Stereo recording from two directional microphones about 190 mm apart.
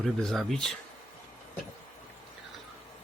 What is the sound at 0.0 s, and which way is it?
Speech, centre (ahead or behind).